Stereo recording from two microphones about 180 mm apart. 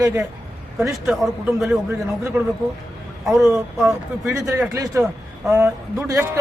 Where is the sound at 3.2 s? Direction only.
Centre (ahead or behind).